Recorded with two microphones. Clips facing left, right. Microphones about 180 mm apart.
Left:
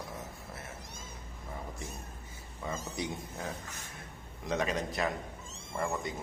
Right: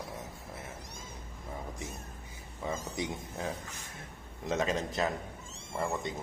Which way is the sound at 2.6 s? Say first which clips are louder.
Right 2 dB; 20° right (ahead or behind).